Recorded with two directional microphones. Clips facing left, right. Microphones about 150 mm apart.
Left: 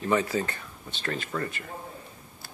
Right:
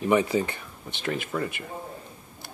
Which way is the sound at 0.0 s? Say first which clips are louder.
Right 3 dB; 15° right (ahead or behind).